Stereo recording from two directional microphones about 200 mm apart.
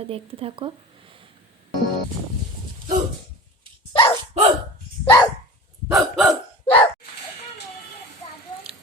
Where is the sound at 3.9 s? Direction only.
25° left (ahead or behind).